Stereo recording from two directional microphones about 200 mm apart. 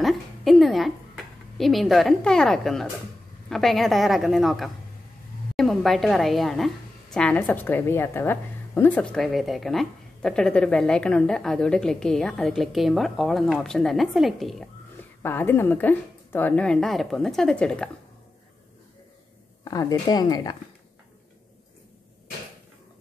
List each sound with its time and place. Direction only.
0.0 s a woman's voice: centre (ahead or behind)
15.2 s a woman's voice: 10° left (ahead or behind)
19.6 s a woman's voice: 20° left (ahead or behind)